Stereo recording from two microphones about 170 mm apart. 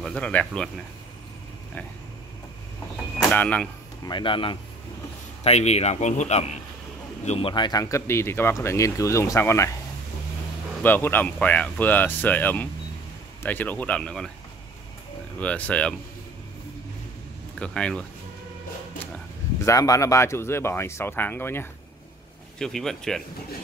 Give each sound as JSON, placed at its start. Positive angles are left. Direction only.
{"t": 0.0, "sound": "speech", "side_deg": 5}
{"t": 3.3, "sound": "speech", "side_deg": 10}
{"t": 4.0, "sound": "speech", "side_deg": 30}
{"t": 10.8, "sound": "speech", "side_deg": 10}
{"t": 15.3, "sound": "speech", "side_deg": 10}
{"t": 17.6, "sound": "speech", "side_deg": 5}
{"t": 19.1, "sound": "speech", "side_deg": 15}
{"t": 22.6, "sound": "speech", "side_deg": 0}